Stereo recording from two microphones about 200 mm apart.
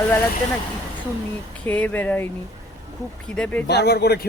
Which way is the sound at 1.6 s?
5° left (ahead or behind).